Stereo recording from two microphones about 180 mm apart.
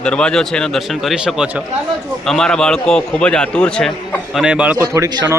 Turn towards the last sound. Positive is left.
turn(degrees=-15)  # may be behind; listen again after turning